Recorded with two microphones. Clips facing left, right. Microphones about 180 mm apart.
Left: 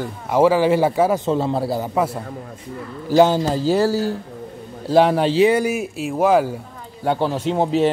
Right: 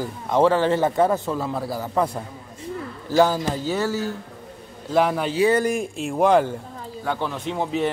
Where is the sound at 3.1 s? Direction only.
20° left (ahead or behind).